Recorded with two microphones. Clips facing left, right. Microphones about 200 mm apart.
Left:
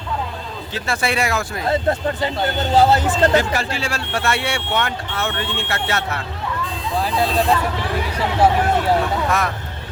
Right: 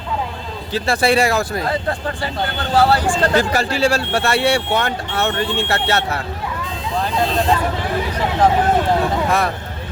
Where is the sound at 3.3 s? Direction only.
40° right (ahead or behind).